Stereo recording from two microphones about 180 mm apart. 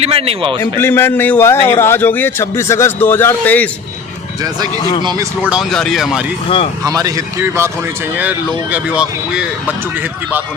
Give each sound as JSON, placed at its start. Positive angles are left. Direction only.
{"t": 0.0, "sound": "speech", "side_deg": -35}
{"t": 0.6, "sound": "a man's voice", "side_deg": 15}
{"t": 4.8, "sound": "speech", "side_deg": 25}
{"t": 5.0, "sound": "speech", "side_deg": -20}
{"t": 5.5, "sound": "speech", "side_deg": 0}
{"t": 6.8, "sound": "speech", "side_deg": -20}